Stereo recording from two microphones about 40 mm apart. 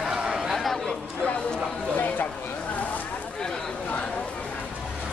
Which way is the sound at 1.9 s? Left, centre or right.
Left.